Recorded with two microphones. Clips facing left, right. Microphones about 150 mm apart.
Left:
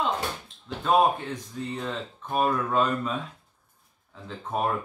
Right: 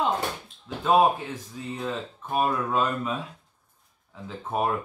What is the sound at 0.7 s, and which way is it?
Speech, 5° right (ahead or behind).